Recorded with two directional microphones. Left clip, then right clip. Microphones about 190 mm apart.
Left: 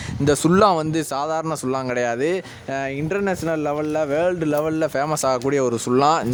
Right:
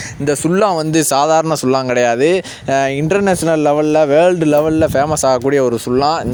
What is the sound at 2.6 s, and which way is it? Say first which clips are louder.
Speech: right 11 dB; 55° right (ahead or behind).